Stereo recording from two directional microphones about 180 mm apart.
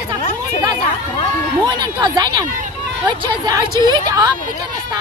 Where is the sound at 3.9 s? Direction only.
20° right (ahead or behind).